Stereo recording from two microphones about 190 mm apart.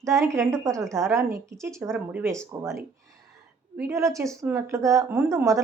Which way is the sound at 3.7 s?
15° right (ahead or behind).